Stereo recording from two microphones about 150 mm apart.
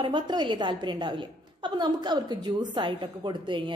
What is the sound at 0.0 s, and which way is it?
A woman's voice, 30° right (ahead or behind).